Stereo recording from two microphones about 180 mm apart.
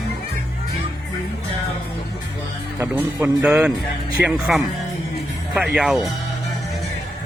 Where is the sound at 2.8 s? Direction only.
10° right (ahead or behind).